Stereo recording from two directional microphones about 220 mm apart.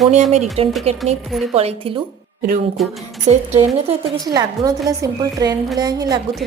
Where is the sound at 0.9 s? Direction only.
25° right (ahead or behind).